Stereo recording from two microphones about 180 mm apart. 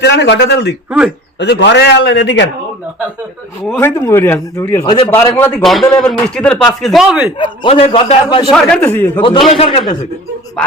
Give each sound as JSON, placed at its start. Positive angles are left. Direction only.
{"t": 0.0, "sound": "a man's voice", "side_deg": 70}
{"t": 0.9, "sound": "speech", "side_deg": -5}
{"t": 1.4, "sound": "a man's voice", "side_deg": 75}
{"t": 3.7, "sound": "a man's voice", "side_deg": 10}
{"t": 7.3, "sound": "a man's voice", "side_deg": 25}
{"t": 8.4, "sound": "a man's voice", "side_deg": 5}
{"t": 9.6, "sound": "a man's voice", "side_deg": 30}